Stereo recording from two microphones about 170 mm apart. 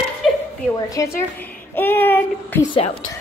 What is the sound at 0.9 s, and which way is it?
A child's voice, 15° left (ahead or behind).